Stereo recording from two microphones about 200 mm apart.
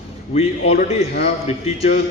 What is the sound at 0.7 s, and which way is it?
Speech, 50° left (ahead or behind).